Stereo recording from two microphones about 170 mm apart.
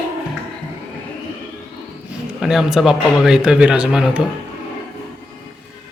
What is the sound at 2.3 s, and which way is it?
Speech, 5° right (ahead or behind).